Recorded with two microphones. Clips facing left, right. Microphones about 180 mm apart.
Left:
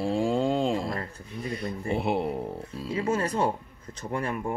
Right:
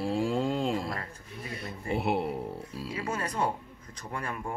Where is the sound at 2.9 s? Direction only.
25° left (ahead or behind).